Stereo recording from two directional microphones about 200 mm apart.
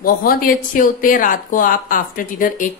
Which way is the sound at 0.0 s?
45° left (ahead or behind).